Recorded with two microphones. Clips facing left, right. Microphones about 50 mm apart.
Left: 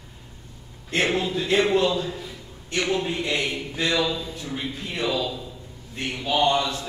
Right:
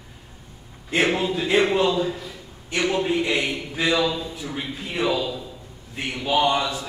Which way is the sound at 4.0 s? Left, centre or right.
Centre.